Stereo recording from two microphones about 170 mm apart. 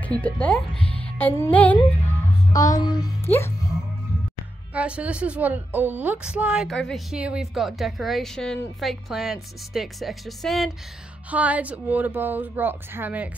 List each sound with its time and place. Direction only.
0.2 s speech: 5° left (ahead or behind)
1.0 s music: 10° left (ahead or behind)
2.5 s music: 20° left (ahead or behind)
3.3 s speech: 15° left (ahead or behind)
4.7 s a woman's voice: 5° right (ahead or behind)